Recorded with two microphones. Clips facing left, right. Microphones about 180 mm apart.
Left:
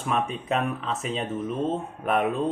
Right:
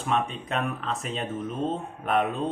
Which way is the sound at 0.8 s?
Centre (ahead or behind).